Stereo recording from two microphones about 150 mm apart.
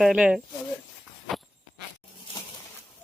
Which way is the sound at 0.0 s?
5° right (ahead or behind).